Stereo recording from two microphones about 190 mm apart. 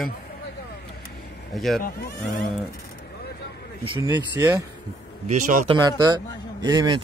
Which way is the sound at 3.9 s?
25° right (ahead or behind).